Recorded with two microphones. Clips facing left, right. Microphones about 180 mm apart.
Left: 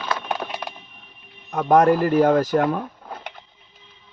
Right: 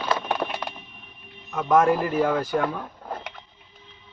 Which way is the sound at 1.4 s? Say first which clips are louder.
Left 3 dB; 35° left (ahead or behind).